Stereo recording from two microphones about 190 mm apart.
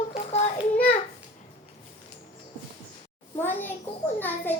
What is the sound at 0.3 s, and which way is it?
Child singing, 35° left (ahead or behind).